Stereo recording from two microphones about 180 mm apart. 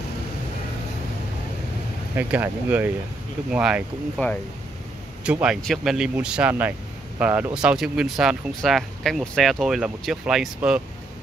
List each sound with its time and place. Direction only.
2.1 s speech: 10° right (ahead or behind)
4.2 s speech: 10° left (ahead or behind)
5.2 s speech: 5° right (ahead or behind)